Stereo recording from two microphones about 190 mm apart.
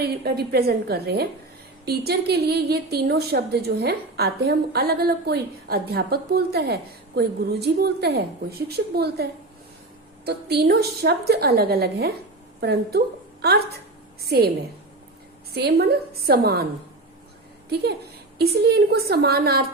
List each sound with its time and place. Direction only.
0.0 s a woman's voice: 55° right (ahead or behind)
14.2 s a woman's voice: 55° right (ahead or behind)
15.5 s a woman's voice: 55° right (ahead or behind)
18.3 s a woman's voice: 55° right (ahead or behind)